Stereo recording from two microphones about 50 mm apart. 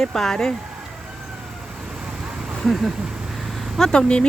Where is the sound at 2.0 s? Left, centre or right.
Centre.